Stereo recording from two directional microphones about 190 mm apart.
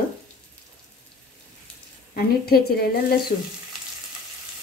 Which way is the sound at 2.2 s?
55° left (ahead or behind).